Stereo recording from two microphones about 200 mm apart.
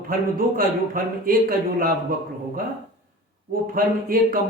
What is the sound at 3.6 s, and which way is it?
Speech, 45° right (ahead or behind).